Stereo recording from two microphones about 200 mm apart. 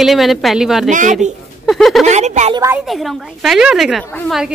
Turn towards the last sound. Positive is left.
turn(degrees=0)  # may be behind; listen again after turning